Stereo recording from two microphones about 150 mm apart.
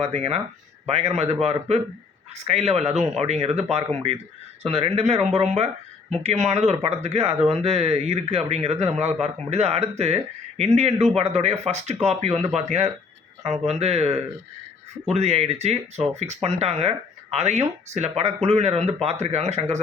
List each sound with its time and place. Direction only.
0.0 s speech: 45° right (ahead or behind)